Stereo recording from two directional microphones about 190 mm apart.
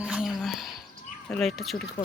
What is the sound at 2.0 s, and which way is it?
Speech, 25° left (ahead or behind).